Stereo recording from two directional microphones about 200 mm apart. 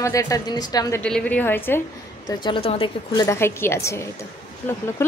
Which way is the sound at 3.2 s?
10° left (ahead or behind).